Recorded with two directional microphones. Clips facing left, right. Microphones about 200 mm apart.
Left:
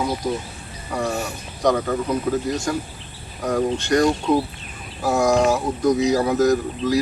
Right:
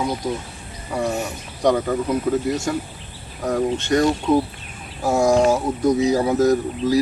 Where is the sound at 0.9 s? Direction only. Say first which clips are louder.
Right 1 dB; 20° right (ahead or behind).